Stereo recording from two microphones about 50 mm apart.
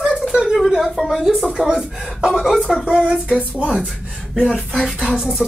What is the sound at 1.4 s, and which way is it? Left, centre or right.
Speech, centre.